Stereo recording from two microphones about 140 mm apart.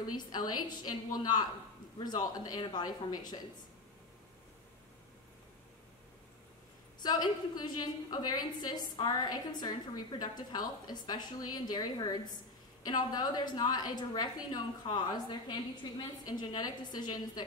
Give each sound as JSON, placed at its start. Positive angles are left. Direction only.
{"t": 0.1, "sound": "a woman's voice", "side_deg": 30}
{"t": 7.0, "sound": "a woman's voice", "side_deg": 30}